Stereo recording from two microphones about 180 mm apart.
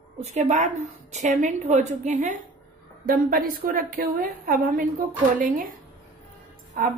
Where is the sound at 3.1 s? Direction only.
55° right (ahead or behind).